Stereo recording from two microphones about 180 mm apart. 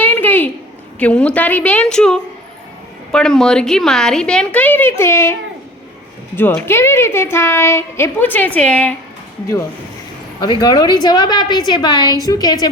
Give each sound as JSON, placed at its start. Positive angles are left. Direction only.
{"t": 0.0, "sound": "a sound", "side_deg": 10}
{"t": 0.9, "sound": "a woman's voice", "side_deg": 5}
{"t": 10.4, "sound": "a woman's voice", "side_deg": 25}